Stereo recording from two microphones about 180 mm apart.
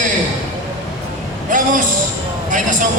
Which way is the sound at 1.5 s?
45° right (ahead or behind).